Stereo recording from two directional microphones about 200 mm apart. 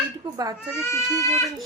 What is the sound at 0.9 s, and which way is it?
Speech, 15° left (ahead or behind).